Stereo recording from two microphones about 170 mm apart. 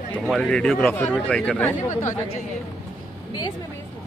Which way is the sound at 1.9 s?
45° left (ahead or behind).